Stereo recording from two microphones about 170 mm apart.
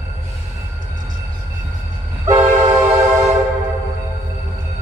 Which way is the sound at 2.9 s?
15° right (ahead or behind).